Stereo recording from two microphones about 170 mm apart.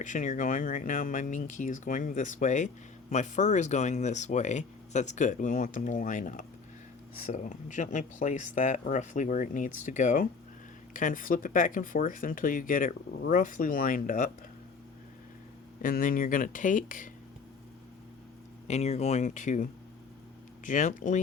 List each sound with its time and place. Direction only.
0.0 s speech: 50° left (ahead or behind)
15.8 s speech: 55° left (ahead or behind)
18.7 s speech: 40° left (ahead or behind)
20.7 s speech: 50° left (ahead or behind)